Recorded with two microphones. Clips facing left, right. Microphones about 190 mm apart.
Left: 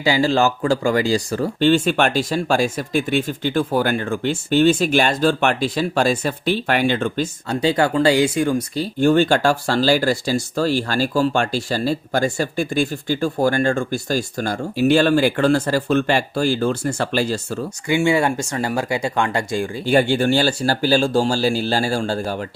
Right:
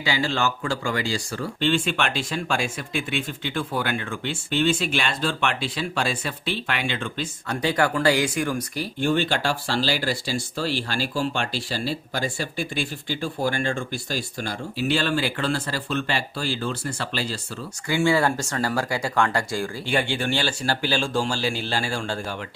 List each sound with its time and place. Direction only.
0.0 s speech: 40° left (ahead or behind)
7.4 s speech: 25° left (ahead or behind)
9.0 s speech: 45° left (ahead or behind)
17.8 s speech: 20° left (ahead or behind)
19.8 s speech: 40° left (ahead or behind)